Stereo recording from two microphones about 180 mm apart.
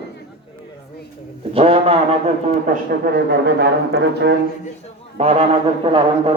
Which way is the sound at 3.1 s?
65° right (ahead or behind).